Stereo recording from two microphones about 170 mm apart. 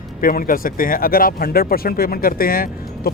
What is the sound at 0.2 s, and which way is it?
Speech, 55° left (ahead or behind).